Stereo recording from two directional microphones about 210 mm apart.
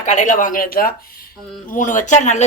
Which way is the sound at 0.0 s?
35° left (ahead or behind).